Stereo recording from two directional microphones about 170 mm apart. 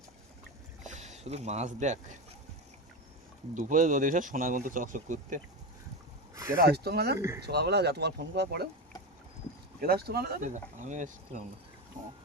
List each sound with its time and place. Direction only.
0.9 s speech: 40° right (ahead or behind)
3.5 s speech: 50° right (ahead or behind)
6.6 s speech: 70° right (ahead or behind)
9.8 s speech: 65° right (ahead or behind)
10.5 s speech: 45° right (ahead or behind)